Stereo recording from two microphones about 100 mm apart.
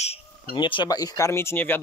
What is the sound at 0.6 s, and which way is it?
Speech, 55° left (ahead or behind).